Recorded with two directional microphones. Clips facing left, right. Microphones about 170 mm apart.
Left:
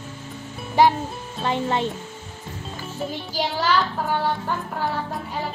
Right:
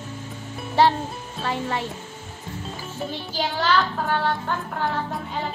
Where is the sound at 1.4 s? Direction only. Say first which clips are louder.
Left 4 dB; 20° left (ahead or behind).